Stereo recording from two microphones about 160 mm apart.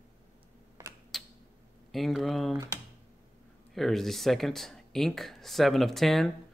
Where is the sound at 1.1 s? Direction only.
Centre (ahead or behind).